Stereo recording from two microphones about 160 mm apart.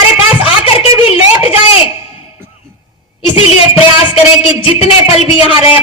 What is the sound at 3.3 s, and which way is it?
Speech, 35° left (ahead or behind).